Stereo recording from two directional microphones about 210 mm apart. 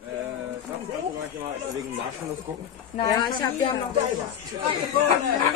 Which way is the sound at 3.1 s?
20° left (ahead or behind).